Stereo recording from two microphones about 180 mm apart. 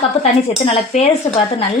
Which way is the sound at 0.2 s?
35° left (ahead or behind).